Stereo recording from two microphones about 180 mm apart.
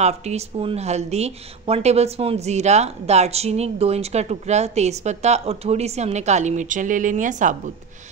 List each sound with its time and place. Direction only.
0.0 s a woman's voice: 40° right (ahead or behind)